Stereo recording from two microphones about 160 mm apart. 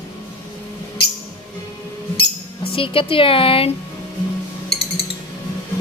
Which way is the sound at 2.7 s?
35° left (ahead or behind).